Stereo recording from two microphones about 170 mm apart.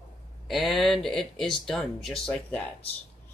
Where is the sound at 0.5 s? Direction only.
Centre (ahead or behind).